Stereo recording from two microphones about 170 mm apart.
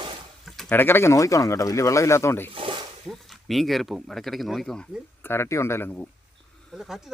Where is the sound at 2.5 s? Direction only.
35° right (ahead or behind).